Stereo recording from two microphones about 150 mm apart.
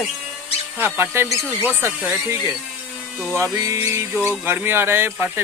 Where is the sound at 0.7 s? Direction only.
15° right (ahead or behind).